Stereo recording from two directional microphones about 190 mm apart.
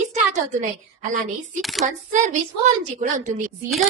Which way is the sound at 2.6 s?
40° right (ahead or behind).